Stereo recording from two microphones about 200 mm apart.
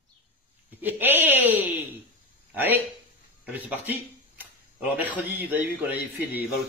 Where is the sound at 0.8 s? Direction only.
10° right (ahead or behind).